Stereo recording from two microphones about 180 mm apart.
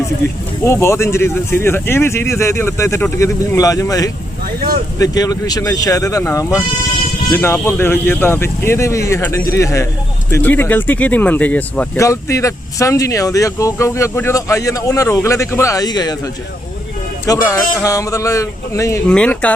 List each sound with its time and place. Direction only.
0.6 s speech: 15° left (ahead or behind)
17.2 s speech: 20° left (ahead or behind)
19.0 s speech: 5° left (ahead or behind)